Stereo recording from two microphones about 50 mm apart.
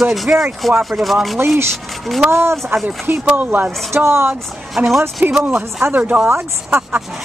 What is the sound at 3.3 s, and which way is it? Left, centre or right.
Speech, right.